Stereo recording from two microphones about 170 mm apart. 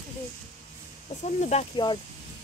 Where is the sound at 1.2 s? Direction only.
45° left (ahead or behind).